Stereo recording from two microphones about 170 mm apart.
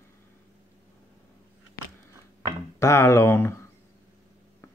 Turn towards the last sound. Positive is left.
turn(degrees=15)  # may be behind; listen again after turning